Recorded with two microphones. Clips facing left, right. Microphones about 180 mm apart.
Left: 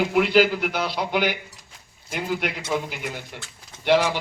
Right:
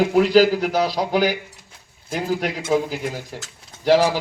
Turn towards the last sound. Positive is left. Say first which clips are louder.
# right 4 dB
turn(degrees=-35)  # may be behind; listen again after turning